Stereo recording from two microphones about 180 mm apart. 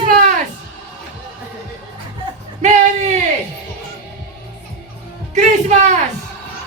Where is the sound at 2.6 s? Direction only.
40° right (ahead or behind).